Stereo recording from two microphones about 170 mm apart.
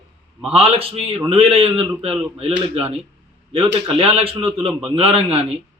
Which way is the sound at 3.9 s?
35° right (ahead or behind).